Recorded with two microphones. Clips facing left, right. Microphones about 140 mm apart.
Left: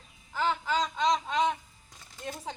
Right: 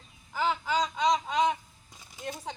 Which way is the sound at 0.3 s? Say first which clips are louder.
Right 1 dB; 5° right (ahead or behind).